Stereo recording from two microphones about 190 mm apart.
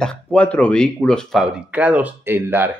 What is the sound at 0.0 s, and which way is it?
Speech, 5° left (ahead or behind).